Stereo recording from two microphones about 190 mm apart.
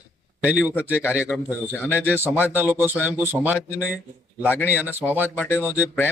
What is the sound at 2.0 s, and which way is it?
Speech, 10° right (ahead or behind).